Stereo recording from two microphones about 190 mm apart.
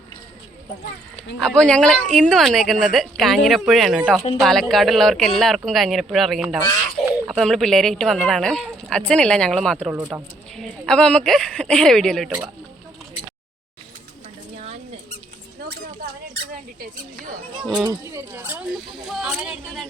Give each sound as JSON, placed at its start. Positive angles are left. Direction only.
{"t": 1.4, "sound": "speech", "side_deg": 5}
{"t": 9.9, "sound": "speech", "side_deg": -10}
{"t": 10.6, "sound": "speech", "side_deg": 5}
{"t": 14.6, "sound": "a sound", "side_deg": -35}
{"t": 17.8, "sound": "speech", "side_deg": -15}